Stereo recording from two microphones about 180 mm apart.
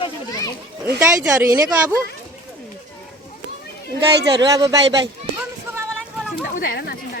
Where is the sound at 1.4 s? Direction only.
15° right (ahead or behind).